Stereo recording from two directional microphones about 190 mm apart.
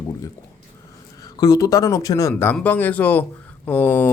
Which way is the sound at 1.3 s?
20° left (ahead or behind).